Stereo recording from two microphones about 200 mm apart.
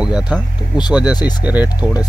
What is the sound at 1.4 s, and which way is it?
Speech, 5° right (ahead or behind).